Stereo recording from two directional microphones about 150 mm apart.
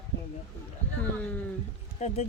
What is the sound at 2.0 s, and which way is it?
Speech, 50° left (ahead or behind).